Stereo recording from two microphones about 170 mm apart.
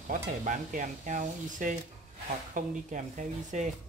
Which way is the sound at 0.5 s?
50° right (ahead or behind).